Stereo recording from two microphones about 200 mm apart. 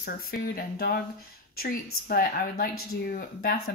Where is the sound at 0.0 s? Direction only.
50° left (ahead or behind).